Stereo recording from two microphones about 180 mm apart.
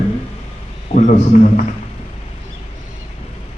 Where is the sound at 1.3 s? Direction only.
45° left (ahead or behind).